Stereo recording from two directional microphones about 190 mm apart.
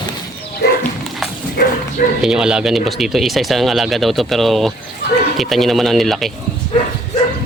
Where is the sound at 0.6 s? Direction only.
55° left (ahead or behind).